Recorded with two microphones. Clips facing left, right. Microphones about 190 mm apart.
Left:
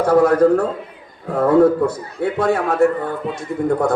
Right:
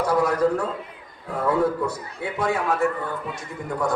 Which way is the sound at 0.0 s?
55° left (ahead or behind).